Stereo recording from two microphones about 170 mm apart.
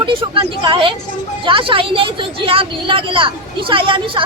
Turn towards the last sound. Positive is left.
turn(degrees=-30)  # may be behind; listen again after turning